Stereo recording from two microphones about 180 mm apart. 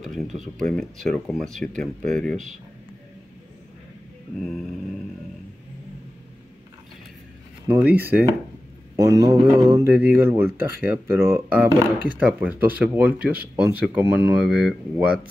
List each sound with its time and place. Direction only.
0.0 s speech: centre (ahead or behind)
7.6 s speech: 10° right (ahead or behind)